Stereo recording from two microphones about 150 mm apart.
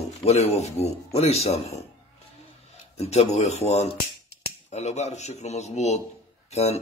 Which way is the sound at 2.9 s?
45° left (ahead or behind).